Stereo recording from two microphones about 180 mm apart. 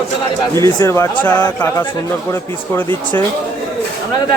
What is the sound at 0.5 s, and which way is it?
Speech, 15° left (ahead or behind).